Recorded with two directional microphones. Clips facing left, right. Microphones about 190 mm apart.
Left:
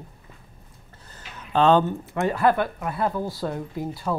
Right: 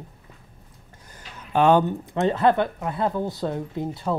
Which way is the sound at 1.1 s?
10° right (ahead or behind).